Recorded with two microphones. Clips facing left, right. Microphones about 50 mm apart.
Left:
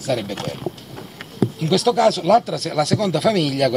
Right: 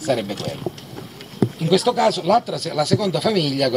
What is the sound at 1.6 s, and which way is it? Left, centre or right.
Speech, centre.